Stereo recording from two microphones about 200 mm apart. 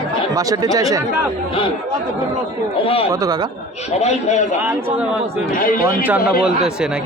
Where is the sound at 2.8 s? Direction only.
30° left (ahead or behind).